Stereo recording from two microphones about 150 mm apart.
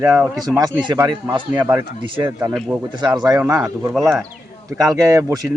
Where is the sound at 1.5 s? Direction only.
20° right (ahead or behind).